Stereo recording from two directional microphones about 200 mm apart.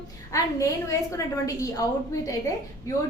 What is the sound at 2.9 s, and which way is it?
Speech, 15° left (ahead or behind).